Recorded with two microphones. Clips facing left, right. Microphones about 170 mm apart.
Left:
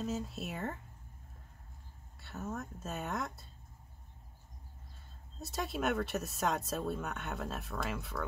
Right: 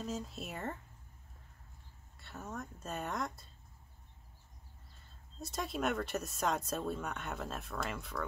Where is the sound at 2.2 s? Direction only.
Centre (ahead or behind).